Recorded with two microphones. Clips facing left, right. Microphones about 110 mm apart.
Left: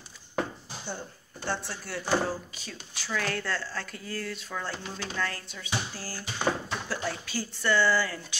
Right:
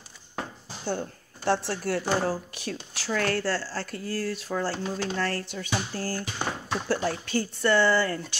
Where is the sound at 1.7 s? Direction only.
55° right (ahead or behind).